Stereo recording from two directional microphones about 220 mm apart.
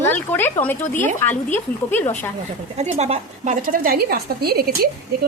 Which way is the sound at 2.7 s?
30° right (ahead or behind).